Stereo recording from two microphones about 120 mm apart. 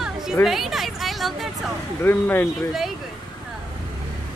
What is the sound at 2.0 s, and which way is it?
Speech, 15° left (ahead or behind).